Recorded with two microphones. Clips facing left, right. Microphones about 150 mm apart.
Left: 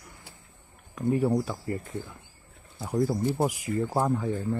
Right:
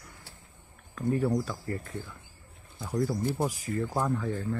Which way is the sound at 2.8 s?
25° left (ahead or behind).